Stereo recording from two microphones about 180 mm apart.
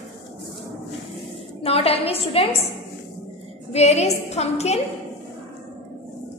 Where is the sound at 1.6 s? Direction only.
35° left (ahead or behind).